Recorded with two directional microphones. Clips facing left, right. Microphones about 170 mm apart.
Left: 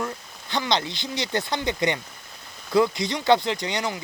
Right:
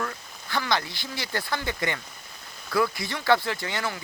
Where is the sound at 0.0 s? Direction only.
20° left (ahead or behind).